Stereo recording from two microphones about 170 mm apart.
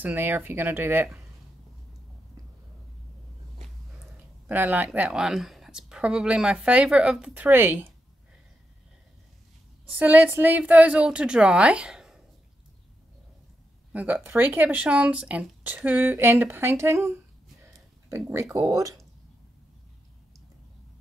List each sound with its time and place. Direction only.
0.0 s speech: 10° right (ahead or behind)
4.0 s speech: 10° right (ahead or behind)
9.8 s speech: 10° right (ahead or behind)
13.9 s speech: 10° right (ahead or behind)
18.1 s speech: 15° right (ahead or behind)